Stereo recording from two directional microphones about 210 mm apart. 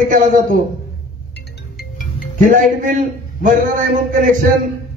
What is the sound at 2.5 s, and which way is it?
A man's voice, 40° right (ahead or behind).